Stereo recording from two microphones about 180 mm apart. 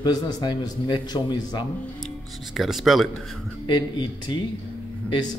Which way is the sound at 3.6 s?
25° left (ahead or behind).